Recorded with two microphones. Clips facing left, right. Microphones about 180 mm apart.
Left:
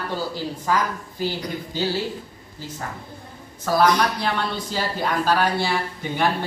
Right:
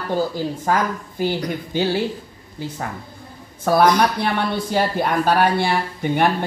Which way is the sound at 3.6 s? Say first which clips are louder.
Right 3 dB; 55° right (ahead or behind).